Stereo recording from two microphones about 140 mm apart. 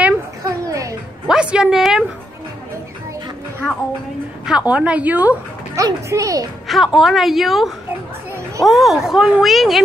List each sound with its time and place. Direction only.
0.5 s music: 25° right (ahead or behind)
1.2 s a woman's voice: 5° right (ahead or behind)
4.5 s a woman's voice: 10° right (ahead or behind)
5.8 s speech: 25° right (ahead or behind)
6.7 s speech: centre (ahead or behind)